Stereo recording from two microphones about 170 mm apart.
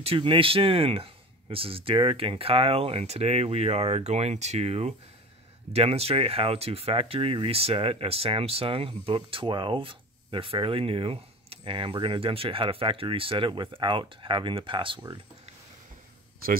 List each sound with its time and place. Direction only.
0.0 s speech: 35° right (ahead or behind)